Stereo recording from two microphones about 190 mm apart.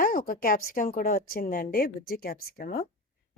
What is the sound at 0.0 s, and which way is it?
A woman's voice, 45° left (ahead or behind).